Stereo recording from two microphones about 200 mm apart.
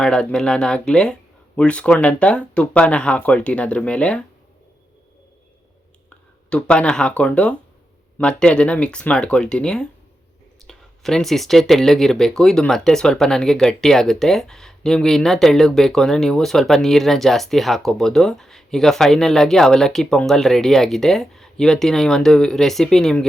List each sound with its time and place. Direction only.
0.0 s speech: 5° left (ahead or behind)
6.5 s speech: 5° left (ahead or behind)